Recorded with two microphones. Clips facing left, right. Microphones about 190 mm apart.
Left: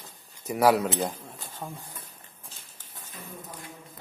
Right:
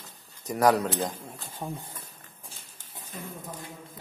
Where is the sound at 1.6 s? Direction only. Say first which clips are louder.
Right 3 dB; 10° right (ahead or behind).